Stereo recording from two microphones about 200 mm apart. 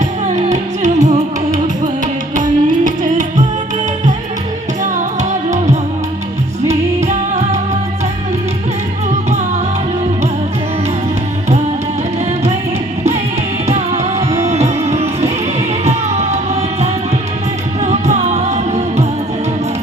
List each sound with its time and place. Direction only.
0.3 s music: 35° right (ahead or behind)
2.3 s music: 40° right (ahead or behind)
6.7 s music: 35° right (ahead or behind)
13.7 s music: 35° right (ahead or behind)